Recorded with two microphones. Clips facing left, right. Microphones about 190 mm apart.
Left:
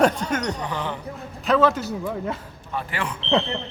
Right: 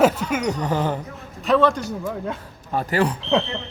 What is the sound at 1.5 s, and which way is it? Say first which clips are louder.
Speech: right 1 dB; 5° left (ahead or behind).